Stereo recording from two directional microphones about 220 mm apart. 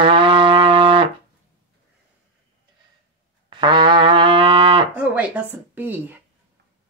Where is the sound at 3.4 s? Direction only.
20° right (ahead or behind).